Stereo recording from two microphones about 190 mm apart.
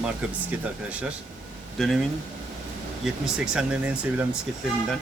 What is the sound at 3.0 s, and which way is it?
Speech, 5° right (ahead or behind).